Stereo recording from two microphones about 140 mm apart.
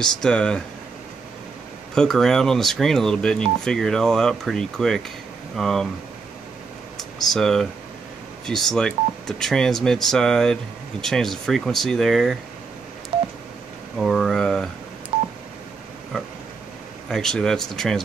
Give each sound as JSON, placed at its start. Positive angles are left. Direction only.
{"t": 0.0, "sound": "speech", "side_deg": 5}
{"t": 2.0, "sound": "speech", "side_deg": 5}
{"t": 7.0, "sound": "speech", "side_deg": 0}
{"t": 13.1, "sound": "telephone dialing", "side_deg": -40}
{"t": 13.9, "sound": "a sound", "side_deg": 0}
{"t": 15.1, "sound": "telephone dialing", "side_deg": -40}
{"t": 17.1, "sound": "speech", "side_deg": 5}